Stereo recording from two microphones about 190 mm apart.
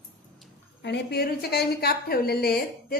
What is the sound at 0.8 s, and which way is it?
A woman's voice, 60° left (ahead or behind).